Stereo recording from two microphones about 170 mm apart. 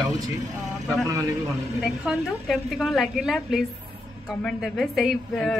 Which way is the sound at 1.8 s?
Centre (ahead or behind).